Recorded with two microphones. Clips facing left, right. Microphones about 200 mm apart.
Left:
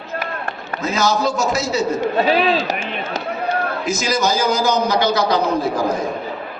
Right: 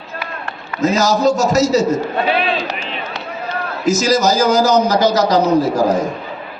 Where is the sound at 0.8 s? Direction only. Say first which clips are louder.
Right 5 dB; 40° right (ahead or behind).